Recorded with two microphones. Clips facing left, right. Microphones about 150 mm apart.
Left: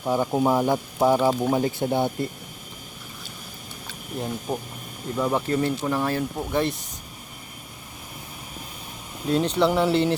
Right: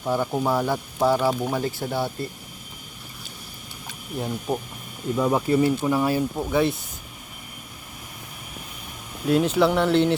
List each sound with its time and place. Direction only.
0.0 s speech: 15° left (ahead or behind)
4.2 s speech: 5° right (ahead or behind)
9.2 s speech: 5° right (ahead or behind)